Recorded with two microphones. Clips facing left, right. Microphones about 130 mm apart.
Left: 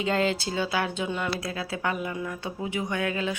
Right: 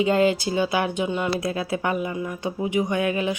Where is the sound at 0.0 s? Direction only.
15° right (ahead or behind).